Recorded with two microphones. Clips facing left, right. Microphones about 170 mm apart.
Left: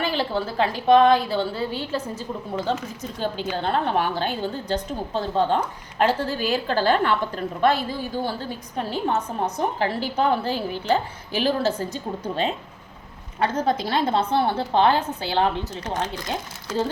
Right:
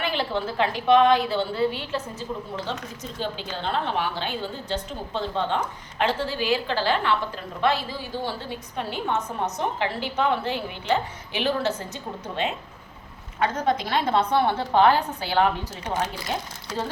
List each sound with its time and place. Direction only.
0.0 s a woman's voice: 35° left (ahead or behind)
3.6 s a woman's voice: 45° left (ahead or behind); by 15.4 s 25° left (ahead or behind)